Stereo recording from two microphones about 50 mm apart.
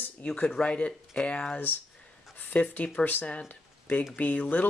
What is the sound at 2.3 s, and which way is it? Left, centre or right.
Speech, left.